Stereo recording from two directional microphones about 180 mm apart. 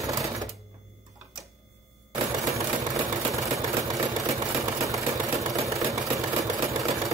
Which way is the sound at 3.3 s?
20° right (ahead or behind).